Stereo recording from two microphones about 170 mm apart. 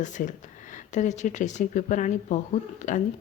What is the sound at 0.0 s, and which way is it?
Speech, 45° left (ahead or behind).